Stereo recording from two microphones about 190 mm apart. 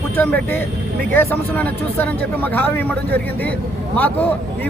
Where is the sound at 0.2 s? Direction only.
10° left (ahead or behind).